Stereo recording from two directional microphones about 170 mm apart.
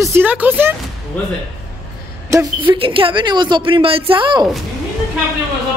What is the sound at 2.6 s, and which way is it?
A woman's voice, 30° right (ahead or behind).